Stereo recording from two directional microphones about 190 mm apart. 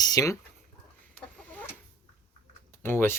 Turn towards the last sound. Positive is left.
turn(degrees=10)  # may be behind; listen again after turning